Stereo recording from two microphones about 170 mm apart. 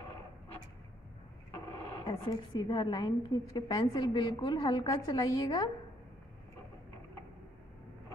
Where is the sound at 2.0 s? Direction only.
30° left (ahead or behind).